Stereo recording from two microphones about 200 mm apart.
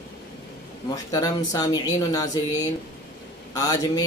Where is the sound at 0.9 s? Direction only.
15° left (ahead or behind).